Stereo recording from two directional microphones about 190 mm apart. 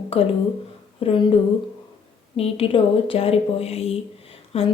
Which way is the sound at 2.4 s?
30° left (ahead or behind).